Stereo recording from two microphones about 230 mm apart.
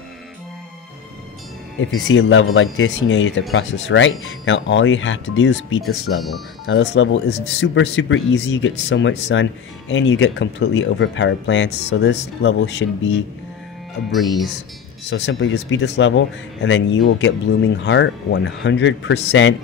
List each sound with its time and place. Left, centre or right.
1.8 s speech: left
15.0 s speech: left